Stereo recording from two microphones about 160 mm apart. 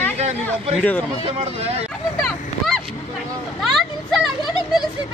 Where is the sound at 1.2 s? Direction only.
40° right (ahead or behind).